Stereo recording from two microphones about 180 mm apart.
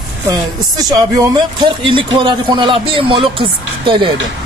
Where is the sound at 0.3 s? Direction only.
20° right (ahead or behind).